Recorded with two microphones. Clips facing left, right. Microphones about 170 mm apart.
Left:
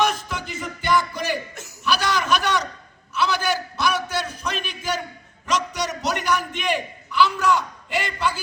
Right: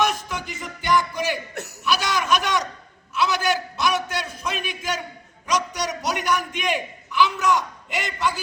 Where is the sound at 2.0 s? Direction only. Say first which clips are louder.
Left 1 dB; 15° right (ahead or behind).